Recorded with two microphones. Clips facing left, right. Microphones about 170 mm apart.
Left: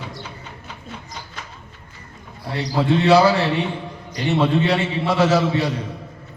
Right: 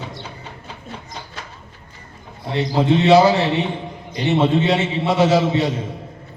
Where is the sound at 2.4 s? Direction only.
20° right (ahead or behind).